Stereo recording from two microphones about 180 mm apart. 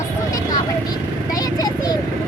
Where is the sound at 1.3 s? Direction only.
20° left (ahead or behind).